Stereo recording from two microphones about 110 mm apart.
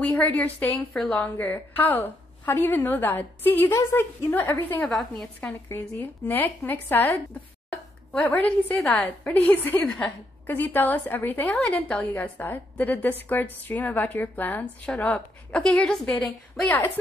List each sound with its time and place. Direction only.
0.0 s a woman's voice: 15° left (ahead or behind)
0.9 s a woman's voice: 5° left (ahead or behind)
1.4 s a woman's voice: 15° left (ahead or behind)
4.9 s a woman's voice: 5° left (ahead or behind)
5.5 s speech: 20° left (ahead or behind)
8.2 s a woman's voice: 15° left (ahead or behind)
16.1 s a woman's voice: 15° left (ahead or behind)